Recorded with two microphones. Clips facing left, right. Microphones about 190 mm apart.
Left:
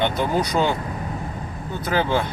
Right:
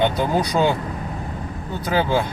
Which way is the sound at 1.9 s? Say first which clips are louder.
Right 1 dB; 15° right (ahead or behind).